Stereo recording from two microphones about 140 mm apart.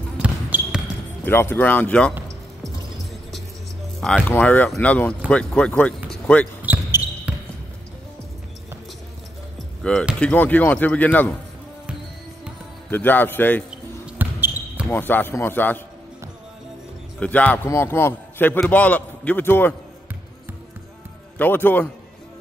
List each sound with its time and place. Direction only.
0.2 s basketball bounce: 10° right (ahead or behind)
1.2 s a man's voice: 15° left (ahead or behind)
2.1 s a sound: 20° right (ahead or behind)
4.0 s a man's voice: 5° left (ahead or behind)
6.6 s basketball bounce: 10° right (ahead or behind)
9.9 s a man's voice: 5° left (ahead or behind)
12.9 s a man's voice: 15° left (ahead or behind)
14.0 s basketball bounce: 10° right (ahead or behind)
14.9 s a man's voice: 15° left (ahead or behind)
17.2 s a man's voice: 10° left (ahead or behind)
21.4 s a man's voice: 15° left (ahead or behind)